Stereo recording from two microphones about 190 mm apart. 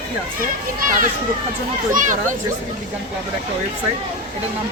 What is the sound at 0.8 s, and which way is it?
A child's voice, 45° right (ahead or behind).